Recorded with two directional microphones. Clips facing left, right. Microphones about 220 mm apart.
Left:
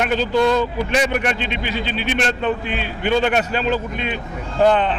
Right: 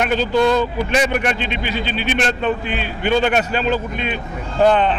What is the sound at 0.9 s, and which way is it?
A man's voice, 15° right (ahead or behind).